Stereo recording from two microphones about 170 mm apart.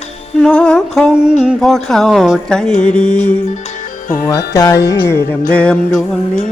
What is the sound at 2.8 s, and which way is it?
Mantra, 5° left (ahead or behind).